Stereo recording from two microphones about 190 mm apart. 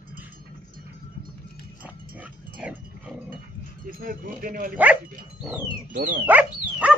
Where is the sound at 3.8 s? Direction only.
45° right (ahead or behind).